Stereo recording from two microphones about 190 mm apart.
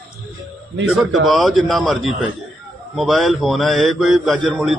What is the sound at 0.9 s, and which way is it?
Speech, centre (ahead or behind).